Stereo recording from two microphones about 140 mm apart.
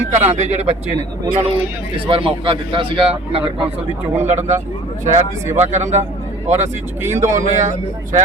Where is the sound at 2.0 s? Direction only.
40° right (ahead or behind).